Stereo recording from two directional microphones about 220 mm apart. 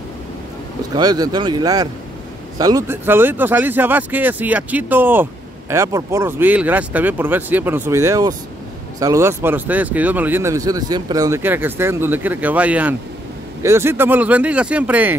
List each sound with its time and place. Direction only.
0.9 s speech: 15° right (ahead or behind)